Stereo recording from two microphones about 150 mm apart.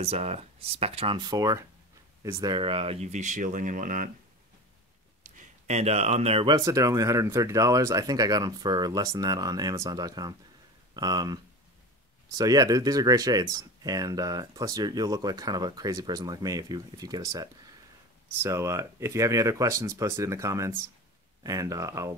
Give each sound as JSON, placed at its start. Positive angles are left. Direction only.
{"t": 0.0, "sound": "speech", "side_deg": -45}
{"t": 2.5, "sound": "speech", "side_deg": -35}
{"t": 5.4, "sound": "speech", "side_deg": -50}
{"t": 6.4, "sound": "speech", "side_deg": -25}
{"t": 12.4, "sound": "speech", "side_deg": -25}